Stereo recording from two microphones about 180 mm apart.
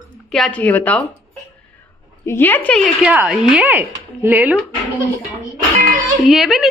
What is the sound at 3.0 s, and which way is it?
Speech, 10° right (ahead or behind).